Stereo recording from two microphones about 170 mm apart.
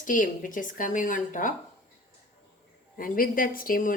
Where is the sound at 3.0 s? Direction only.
55° left (ahead or behind).